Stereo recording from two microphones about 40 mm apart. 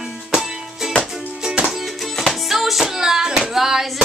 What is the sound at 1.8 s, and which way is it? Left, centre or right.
Music, centre.